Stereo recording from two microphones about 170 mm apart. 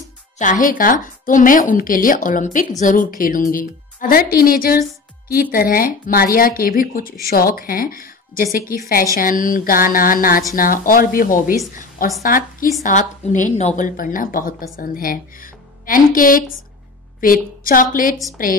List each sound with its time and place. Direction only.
0.4 s a woman's voice: 50° left (ahead or behind)